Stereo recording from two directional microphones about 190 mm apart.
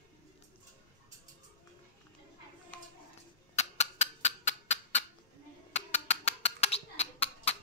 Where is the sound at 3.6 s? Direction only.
35° left (ahead or behind).